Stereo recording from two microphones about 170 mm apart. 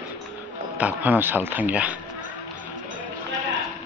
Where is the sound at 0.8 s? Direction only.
10° right (ahead or behind).